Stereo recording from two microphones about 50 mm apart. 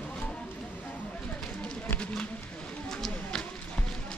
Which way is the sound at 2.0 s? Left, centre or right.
Centre.